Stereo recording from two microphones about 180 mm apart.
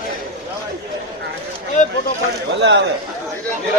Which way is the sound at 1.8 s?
45° left (ahead or behind).